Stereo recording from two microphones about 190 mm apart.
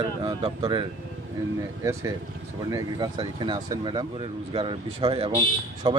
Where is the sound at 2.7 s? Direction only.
20° right (ahead or behind).